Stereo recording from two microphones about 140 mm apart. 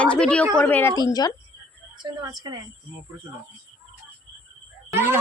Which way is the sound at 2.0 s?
30° right (ahead or behind).